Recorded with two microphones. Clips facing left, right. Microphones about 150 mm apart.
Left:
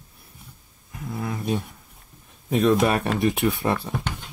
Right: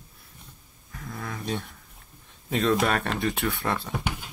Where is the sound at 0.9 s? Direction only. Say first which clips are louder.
Left 6 dB; 15° left (ahead or behind).